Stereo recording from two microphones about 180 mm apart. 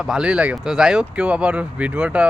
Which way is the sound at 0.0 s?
5° right (ahead or behind).